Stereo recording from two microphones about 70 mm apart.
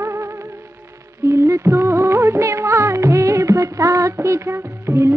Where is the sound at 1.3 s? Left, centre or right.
Right.